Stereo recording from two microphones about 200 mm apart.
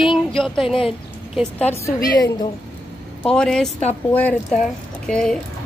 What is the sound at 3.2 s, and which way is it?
Speech, 5° left (ahead or behind).